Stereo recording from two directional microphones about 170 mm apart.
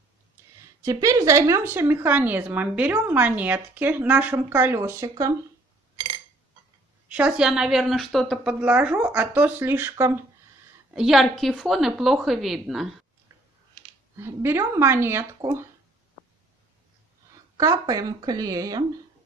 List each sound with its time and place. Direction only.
0.8 s a woman's voice: 20° right (ahead or behind)
7.1 s a woman's voice: 10° right (ahead or behind)
10.9 s a woman's voice: 5° right (ahead or behind)
14.1 s a woman's voice: 15° right (ahead or behind)
17.6 s speech: 20° right (ahead or behind)